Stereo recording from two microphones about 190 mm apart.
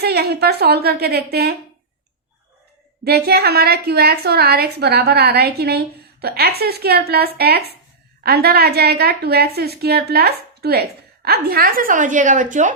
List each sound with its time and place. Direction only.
0.0 s a woman's voice: 60° right (ahead or behind)
3.0 s a woman's voice: 55° right (ahead or behind)